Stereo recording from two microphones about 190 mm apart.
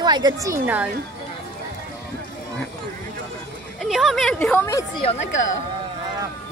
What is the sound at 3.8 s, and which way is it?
Speech, centre (ahead or behind).